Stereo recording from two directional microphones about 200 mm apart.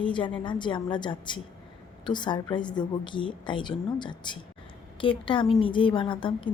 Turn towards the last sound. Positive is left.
turn(degrees=25)  # may be behind; listen again after turning